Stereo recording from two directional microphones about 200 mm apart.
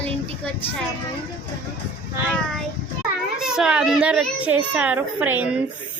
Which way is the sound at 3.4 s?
5° right (ahead or behind).